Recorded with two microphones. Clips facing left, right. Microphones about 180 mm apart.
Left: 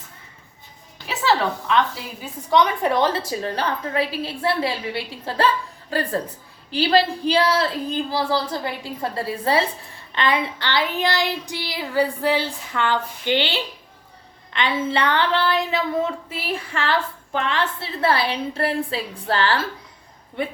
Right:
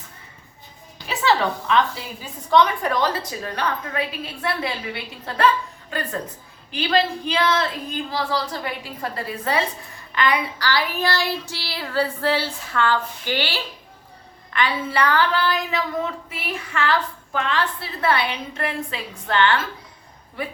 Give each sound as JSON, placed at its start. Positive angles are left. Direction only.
{"t": 1.0, "sound": "a sound", "side_deg": 0}
{"t": 2.5, "sound": "speech", "side_deg": 20}
{"t": 10.2, "sound": "child singing", "side_deg": 25}
{"t": 14.5, "sound": "speech", "side_deg": 20}